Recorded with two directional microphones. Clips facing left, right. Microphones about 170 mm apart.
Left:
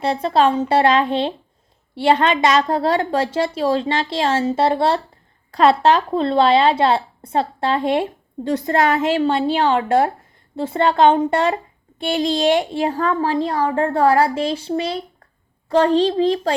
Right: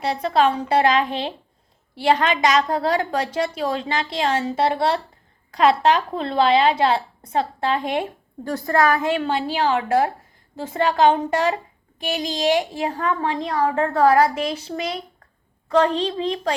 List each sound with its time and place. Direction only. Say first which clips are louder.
0.0 s a child's voice: left 2 dB; 30° left (ahead or behind)